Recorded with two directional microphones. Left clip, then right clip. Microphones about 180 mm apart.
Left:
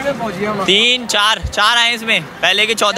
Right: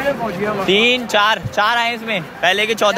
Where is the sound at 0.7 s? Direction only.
20° left (ahead or behind).